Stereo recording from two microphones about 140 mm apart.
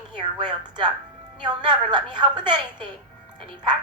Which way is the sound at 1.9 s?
30° right (ahead or behind).